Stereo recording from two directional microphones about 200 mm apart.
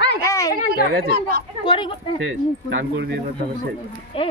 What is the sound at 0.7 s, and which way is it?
Speech, 50° right (ahead or behind).